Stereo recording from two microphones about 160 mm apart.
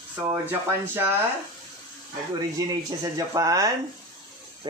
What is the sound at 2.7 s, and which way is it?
Speech, 20° right (ahead or behind).